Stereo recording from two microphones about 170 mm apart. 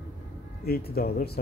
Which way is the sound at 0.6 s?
65° left (ahead or behind).